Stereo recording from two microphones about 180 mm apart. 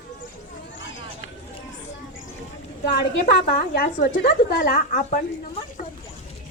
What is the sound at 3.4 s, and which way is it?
Speech, 50° left (ahead or behind).